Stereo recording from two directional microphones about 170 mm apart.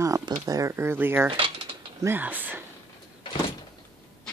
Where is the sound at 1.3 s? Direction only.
30° right (ahead or behind).